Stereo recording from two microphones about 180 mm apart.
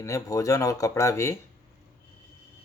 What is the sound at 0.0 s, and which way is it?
Speech, 20° left (ahead or behind).